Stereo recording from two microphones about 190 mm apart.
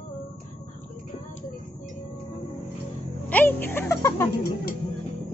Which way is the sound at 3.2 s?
10° left (ahead or behind).